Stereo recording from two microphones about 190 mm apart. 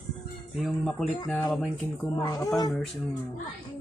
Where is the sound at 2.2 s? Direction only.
20° left (ahead or behind).